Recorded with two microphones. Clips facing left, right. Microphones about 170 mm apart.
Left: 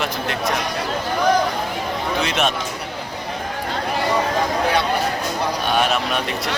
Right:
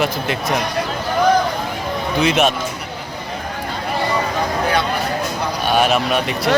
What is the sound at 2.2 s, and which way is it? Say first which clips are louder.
Speech: right 7 dB; 5° right (ahead or behind).